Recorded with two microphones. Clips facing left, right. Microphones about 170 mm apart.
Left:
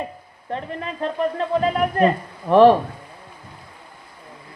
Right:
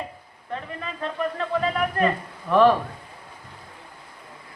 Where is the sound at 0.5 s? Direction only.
35° left (ahead or behind).